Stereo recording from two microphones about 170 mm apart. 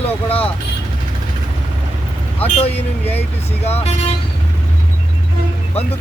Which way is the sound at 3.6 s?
35° left (ahead or behind).